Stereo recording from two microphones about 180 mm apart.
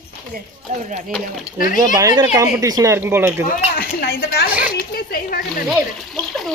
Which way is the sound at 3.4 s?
60° left (ahead or behind).